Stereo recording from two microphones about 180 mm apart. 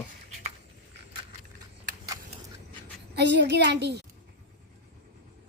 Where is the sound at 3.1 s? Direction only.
70° right (ahead or behind).